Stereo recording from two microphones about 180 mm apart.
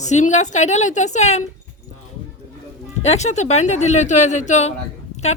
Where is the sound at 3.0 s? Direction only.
35° left (ahead or behind).